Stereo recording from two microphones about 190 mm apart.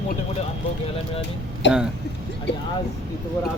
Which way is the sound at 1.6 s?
70° left (ahead or behind).